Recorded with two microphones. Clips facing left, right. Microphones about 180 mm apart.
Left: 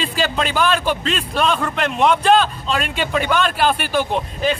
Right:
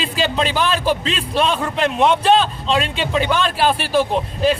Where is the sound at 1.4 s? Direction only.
30° right (ahead or behind).